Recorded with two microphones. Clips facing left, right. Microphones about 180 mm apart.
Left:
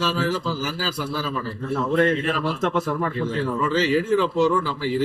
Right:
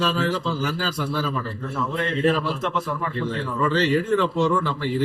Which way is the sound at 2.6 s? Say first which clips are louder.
Left 4 dB; 45° left (ahead or behind).